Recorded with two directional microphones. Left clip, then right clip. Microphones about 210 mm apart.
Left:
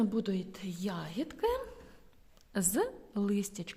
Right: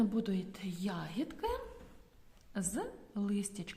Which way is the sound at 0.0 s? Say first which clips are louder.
Left 2 dB; 30° left (ahead or behind).